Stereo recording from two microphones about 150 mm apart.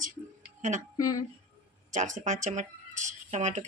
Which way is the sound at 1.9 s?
55° right (ahead or behind).